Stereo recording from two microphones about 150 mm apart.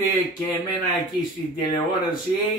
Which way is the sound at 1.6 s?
30° left (ahead or behind).